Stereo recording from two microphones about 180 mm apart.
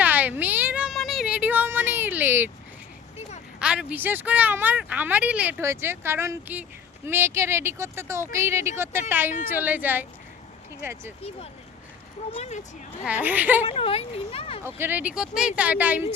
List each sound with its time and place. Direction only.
0.0 s a sound: 10° right (ahead or behind)
3.6 s speech: 5° right (ahead or behind)
11.2 s speech: 35° left (ahead or behind)
13.1 s speech: 10° right (ahead or behind)
13.7 s speech: 30° left (ahead or behind)
14.6 s speech: 10° right (ahead or behind)